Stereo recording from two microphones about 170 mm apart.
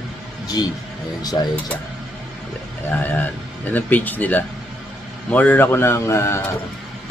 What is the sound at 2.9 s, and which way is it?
A man's voice, 10° left (ahead or behind).